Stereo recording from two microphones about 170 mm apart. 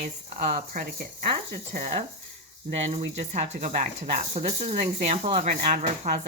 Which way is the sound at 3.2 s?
40° right (ahead or behind).